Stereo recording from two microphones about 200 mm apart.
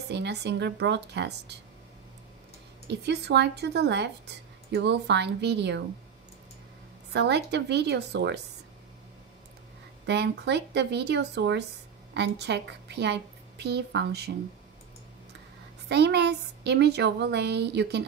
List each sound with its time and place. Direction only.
0.1 s speech: 60° right (ahead or behind)
2.9 s speech: 55° right (ahead or behind)
7.1 s speech: 60° right (ahead or behind)
10.0 s a woman's voice: 60° right (ahead or behind)
15.9 s speech: 55° right (ahead or behind)